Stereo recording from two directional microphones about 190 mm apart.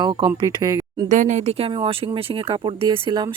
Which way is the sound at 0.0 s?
25° right (ahead or behind).